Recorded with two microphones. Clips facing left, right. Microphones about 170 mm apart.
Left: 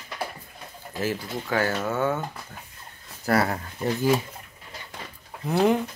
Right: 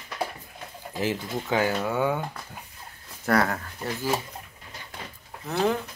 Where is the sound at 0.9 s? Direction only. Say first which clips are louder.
Even; 15° right (ahead or behind).